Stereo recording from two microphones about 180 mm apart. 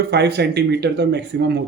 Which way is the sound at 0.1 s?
65° right (ahead or behind).